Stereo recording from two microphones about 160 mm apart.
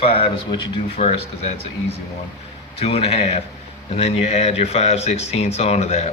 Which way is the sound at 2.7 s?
40° left (ahead or behind).